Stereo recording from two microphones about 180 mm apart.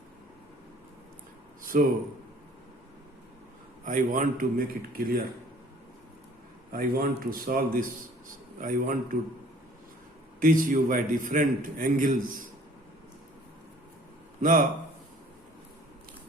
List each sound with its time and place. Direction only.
1.6 s a man's voice: 50° right (ahead or behind)
3.8 s a man's voice: 45° right (ahead or behind)
6.7 s a man's voice: 50° right (ahead or behind)
10.4 s a man's voice: 50° right (ahead or behind)
14.4 s a man's voice: 45° right (ahead or behind)